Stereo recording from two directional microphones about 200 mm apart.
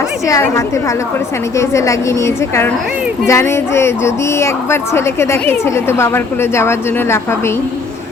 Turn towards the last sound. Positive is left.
turn(degrees=10)  # may be behind; listen again after turning